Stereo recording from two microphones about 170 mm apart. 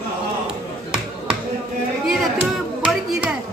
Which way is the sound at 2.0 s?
5° right (ahead or behind).